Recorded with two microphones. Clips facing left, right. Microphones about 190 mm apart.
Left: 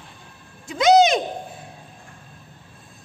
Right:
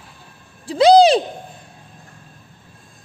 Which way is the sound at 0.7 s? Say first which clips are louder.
Right 5 dB; 30° right (ahead or behind).